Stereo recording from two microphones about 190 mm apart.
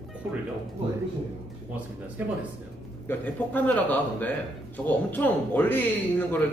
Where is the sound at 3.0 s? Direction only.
10° left (ahead or behind).